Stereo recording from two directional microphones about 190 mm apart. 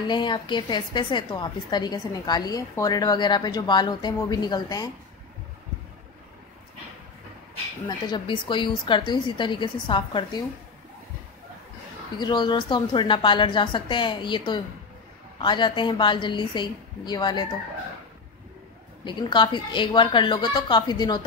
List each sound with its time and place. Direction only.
0.1 s a woman's voice: 25° left (ahead or behind)
8.1 s a woman's voice: 25° left (ahead or behind)
12.2 s a woman's voice: 25° left (ahead or behind)
19.0 s a woman's voice: 25° left (ahead or behind)